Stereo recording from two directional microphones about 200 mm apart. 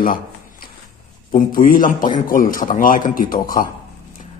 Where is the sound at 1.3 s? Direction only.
45° left (ahead or behind).